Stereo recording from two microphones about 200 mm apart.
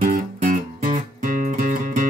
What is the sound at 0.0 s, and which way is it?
Music, 40° right (ahead or behind).